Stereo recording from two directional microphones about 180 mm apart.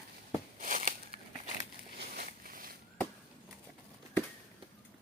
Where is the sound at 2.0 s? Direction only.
55° right (ahead or behind).